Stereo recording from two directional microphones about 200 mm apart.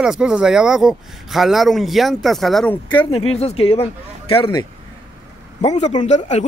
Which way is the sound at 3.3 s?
30° left (ahead or behind).